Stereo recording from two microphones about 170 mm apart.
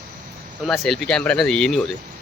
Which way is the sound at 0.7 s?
5° left (ahead or behind).